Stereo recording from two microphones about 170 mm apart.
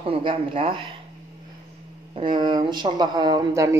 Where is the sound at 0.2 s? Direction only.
30° right (ahead or behind).